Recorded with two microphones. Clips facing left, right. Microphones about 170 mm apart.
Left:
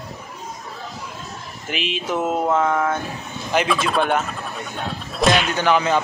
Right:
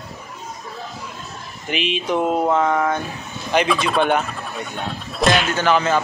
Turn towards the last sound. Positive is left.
turn(degrees=15)  # may be behind; listen again after turning